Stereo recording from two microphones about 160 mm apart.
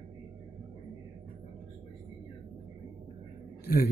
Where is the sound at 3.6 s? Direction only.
80° left.